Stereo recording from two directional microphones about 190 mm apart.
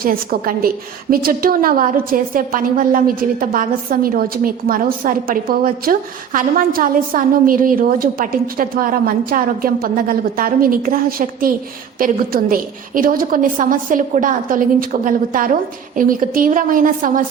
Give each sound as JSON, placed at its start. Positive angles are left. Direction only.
{"t": 0.0, "sound": "a woman's voice", "side_deg": -50}